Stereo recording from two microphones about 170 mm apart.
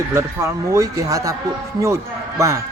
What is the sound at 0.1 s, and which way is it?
Speech, 15° right (ahead or behind).